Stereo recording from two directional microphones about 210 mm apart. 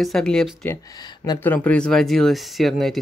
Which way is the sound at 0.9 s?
20° left (ahead or behind).